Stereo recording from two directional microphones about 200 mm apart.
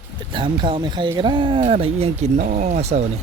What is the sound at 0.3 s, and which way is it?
Speech, 25° right (ahead or behind).